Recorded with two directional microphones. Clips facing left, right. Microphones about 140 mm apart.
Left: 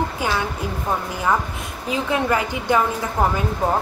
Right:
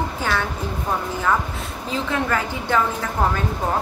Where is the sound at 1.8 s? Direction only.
15° left (ahead or behind).